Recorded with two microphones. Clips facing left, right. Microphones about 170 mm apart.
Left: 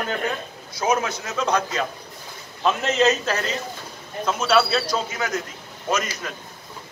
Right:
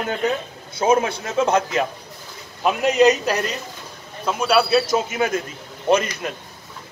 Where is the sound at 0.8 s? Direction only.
25° right (ahead or behind).